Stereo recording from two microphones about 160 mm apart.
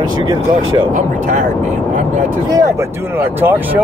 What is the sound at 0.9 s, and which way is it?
Speech, 50° right (ahead or behind).